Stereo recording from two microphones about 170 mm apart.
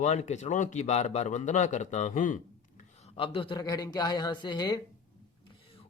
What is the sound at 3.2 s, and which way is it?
Speech, 30° left (ahead or behind).